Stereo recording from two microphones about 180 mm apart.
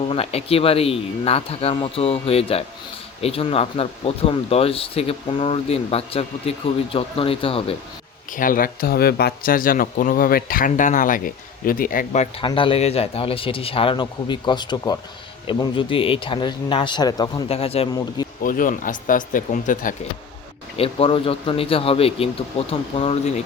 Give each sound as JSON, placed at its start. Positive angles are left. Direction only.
{"t": 0.1, "sound": "speech", "side_deg": 35}
{"t": 8.3, "sound": "speech", "side_deg": 50}
{"t": 12.4, "sound": "speech", "side_deg": 30}
{"t": 17.5, "sound": "speech", "side_deg": 35}
{"t": 18.4, "sound": "speech", "side_deg": 50}
{"t": 20.7, "sound": "speech", "side_deg": 30}